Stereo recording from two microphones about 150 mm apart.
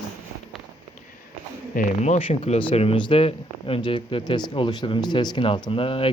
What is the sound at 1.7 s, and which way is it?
Speech, 50° left (ahead or behind).